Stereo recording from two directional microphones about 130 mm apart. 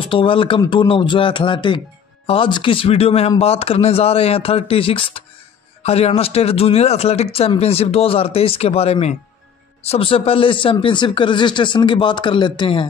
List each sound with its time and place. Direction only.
0.1 s a man's voice: 40° left (ahead or behind)